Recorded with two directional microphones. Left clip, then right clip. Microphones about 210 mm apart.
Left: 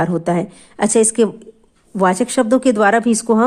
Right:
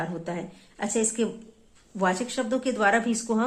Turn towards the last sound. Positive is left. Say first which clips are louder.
# left 12 dB
turn(degrees=45)  # may be behind; listen again after turning